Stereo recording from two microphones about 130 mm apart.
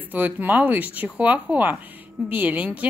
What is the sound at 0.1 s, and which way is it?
A woman's voice, 15° right (ahead or behind).